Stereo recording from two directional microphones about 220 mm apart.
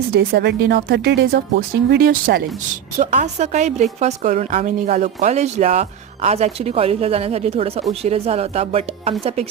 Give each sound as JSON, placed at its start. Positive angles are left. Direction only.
{"t": 0.1, "sound": "speech", "side_deg": -45}
{"t": 3.0, "sound": "a woman's voice", "side_deg": -35}